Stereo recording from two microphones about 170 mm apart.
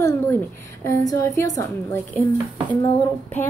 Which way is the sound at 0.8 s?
15° left (ahead or behind).